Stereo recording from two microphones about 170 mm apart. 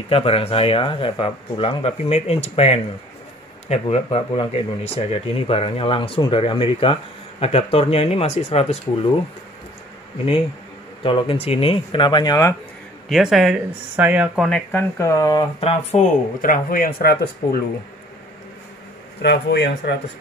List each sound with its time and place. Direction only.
0.1 s speech: 35° left (ahead or behind)
11.0 s speech: 30° left (ahead or behind)
13.1 s speech: centre (ahead or behind)
14.5 s speech: 10° left (ahead or behind)
15.6 s speech: 45° left (ahead or behind); by 17.6 s 65° left (ahead or behind)
19.2 s speech: 85° left